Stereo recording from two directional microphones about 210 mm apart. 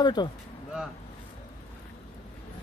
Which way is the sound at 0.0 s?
20° left (ahead or behind).